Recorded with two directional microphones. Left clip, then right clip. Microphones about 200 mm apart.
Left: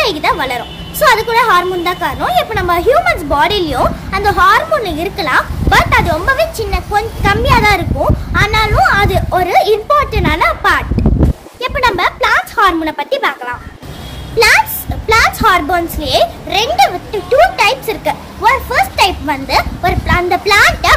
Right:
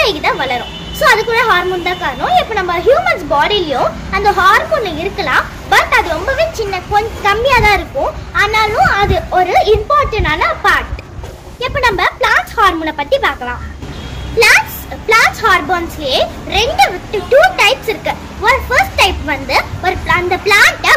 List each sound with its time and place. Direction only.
0.0 s a woman's voice: 25° left (ahead or behind)
15.0 s a woman's voice: 20° left (ahead or behind)